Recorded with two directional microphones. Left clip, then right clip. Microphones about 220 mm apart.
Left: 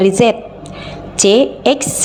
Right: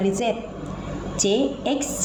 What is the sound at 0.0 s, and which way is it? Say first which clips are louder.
A woman's voice: left 12 dB; 50° left (ahead or behind).